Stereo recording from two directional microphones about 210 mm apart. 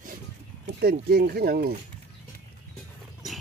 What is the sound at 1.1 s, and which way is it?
Speech, 50° right (ahead or behind).